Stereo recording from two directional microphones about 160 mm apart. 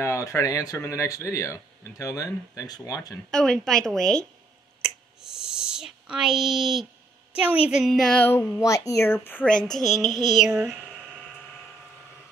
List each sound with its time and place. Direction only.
0.0 s speech: 20° left (ahead or behind)
3.3 s a woman's voice: 5° left (ahead or behind)